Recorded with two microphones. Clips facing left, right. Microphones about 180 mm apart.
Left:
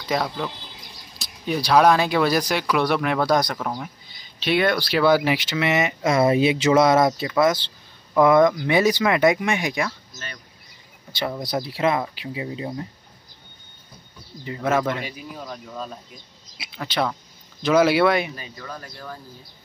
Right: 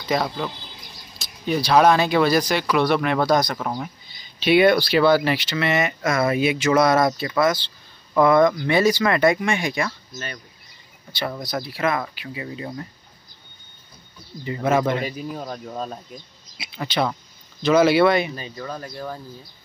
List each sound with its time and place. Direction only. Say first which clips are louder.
0.1 s speech: right 1 dB; centre (ahead or behind)
3.5 s speech: right 1 dB; 5° right (ahead or behind)
5.0 s speech: right 1 dB; 15° left (ahead or behind)
6.0 s speech: left 4 dB; 30° left (ahead or behind)
8.2 s speech: even; 15° left (ahead or behind)
11.1 s speech: left 1 dB; 20° left (ahead or behind)
14.4 s speech: right 2 dB; centre (ahead or behind)
15.0 s speech: right 5 dB; 45° right (ahead or behind)
16.5 s speech: right 1 dB; centre (ahead or behind)
18.3 s speech: right 5 dB; 30° right (ahead or behind)